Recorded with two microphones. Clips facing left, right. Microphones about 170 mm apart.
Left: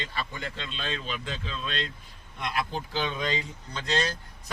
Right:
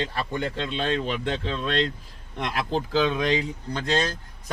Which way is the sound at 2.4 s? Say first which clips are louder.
Right 5 dB; 85° right.